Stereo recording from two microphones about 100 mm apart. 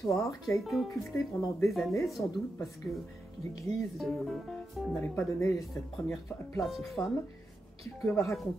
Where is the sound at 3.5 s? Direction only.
35° left (ahead or behind).